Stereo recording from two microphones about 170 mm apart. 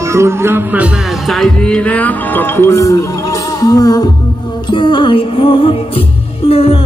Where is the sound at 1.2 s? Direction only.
Centre (ahead or behind).